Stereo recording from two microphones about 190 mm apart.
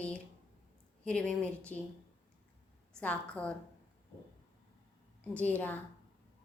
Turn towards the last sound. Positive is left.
turn(degrees=10)  # may be behind; listen again after turning